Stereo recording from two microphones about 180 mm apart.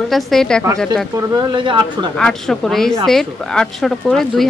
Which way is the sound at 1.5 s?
25° right (ahead or behind).